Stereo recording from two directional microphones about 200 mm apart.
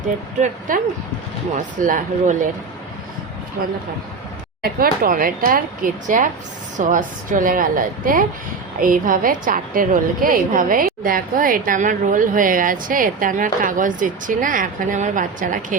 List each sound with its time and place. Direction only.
0.7 s speech: 40° right (ahead or behind)
4.6 s a woman's voice: 45° right (ahead or behind)